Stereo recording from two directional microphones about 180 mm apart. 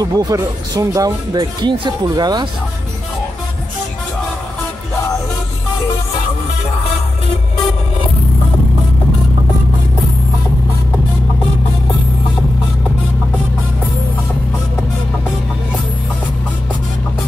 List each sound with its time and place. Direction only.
0.0 s speech: 20° right (ahead or behind)